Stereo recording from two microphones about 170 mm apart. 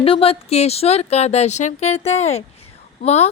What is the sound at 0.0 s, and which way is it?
Speech, 35° left (ahead or behind).